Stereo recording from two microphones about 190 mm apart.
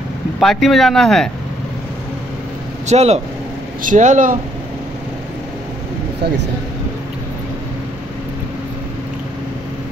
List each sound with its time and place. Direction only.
0.4 s speech: centre (ahead or behind)
2.9 s speech: 35° right (ahead or behind)